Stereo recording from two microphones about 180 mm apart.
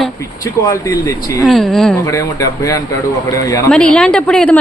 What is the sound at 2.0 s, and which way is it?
Speech, 20° left (ahead or behind).